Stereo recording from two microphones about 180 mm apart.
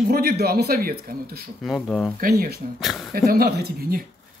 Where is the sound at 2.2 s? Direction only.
60° right (ahead or behind).